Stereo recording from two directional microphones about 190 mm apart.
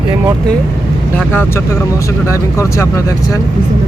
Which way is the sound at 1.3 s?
10° left (ahead or behind).